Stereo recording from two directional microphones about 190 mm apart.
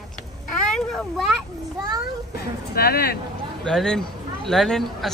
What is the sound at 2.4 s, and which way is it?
Speech, 55° left (ahead or behind).